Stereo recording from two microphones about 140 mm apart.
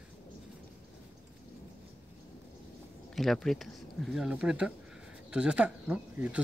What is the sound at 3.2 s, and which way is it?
Speech, centre (ahead or behind).